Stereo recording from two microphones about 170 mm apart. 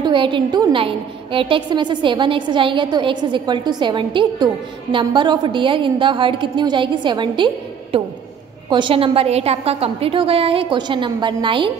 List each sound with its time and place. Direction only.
0.0 s a woman's voice: 30° right (ahead or behind)